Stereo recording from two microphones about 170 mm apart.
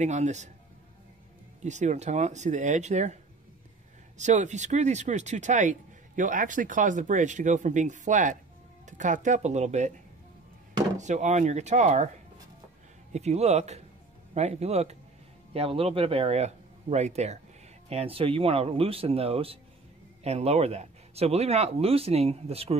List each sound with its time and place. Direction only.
0.0 s speech: 45° right (ahead or behind)
1.6 s speech: 45° right (ahead or behind)
4.2 s speech: 45° right (ahead or behind)
11.0 s speech: 45° right (ahead or behind)
13.1 s speech: 40° right (ahead or behind)